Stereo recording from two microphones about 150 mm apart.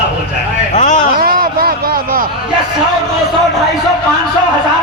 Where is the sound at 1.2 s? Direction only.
85° right.